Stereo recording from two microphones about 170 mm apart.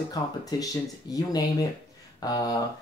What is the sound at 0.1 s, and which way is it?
Speech, 25° left (ahead or behind).